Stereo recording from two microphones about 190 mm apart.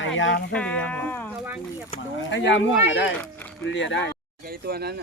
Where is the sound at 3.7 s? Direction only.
75° left (ahead or behind).